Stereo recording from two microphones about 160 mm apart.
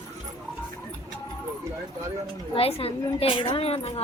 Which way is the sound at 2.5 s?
40° left (ahead or behind).